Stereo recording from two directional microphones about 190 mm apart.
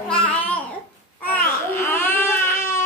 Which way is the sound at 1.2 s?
10° left (ahead or behind).